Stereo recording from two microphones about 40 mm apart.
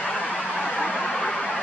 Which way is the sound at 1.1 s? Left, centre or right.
Centre.